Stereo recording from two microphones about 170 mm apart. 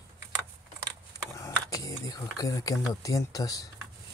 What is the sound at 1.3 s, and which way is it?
Speech, 20° left (ahead or behind).